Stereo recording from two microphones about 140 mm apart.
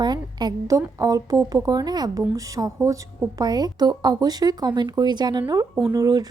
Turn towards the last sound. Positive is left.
turn(degrees=-25)  # may be behind; listen again after turning